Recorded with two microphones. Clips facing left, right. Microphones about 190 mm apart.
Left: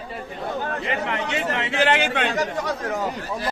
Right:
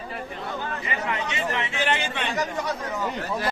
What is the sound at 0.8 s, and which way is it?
Speech, 70° left (ahead or behind).